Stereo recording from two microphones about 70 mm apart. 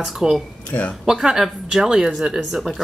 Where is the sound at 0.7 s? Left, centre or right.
Left.